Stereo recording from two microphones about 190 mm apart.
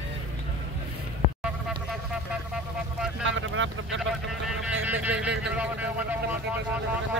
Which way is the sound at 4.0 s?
Centre (ahead or behind).